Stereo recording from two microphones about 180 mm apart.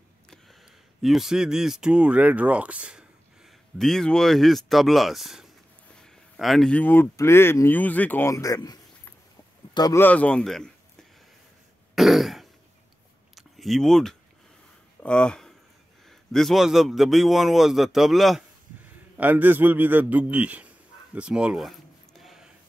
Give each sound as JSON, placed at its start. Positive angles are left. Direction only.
{"t": 1.0, "sound": "speech", "side_deg": 0}
{"t": 9.8, "sound": "speech", "side_deg": 20}
{"t": 10.0, "sound": "a man's voice", "side_deg": 5}
{"t": 11.9, "sound": "throat clearing", "side_deg": 0}
{"t": 13.3, "sound": "a sound", "side_deg": 0}
{"t": 15.0, "sound": "a man's voice", "side_deg": 5}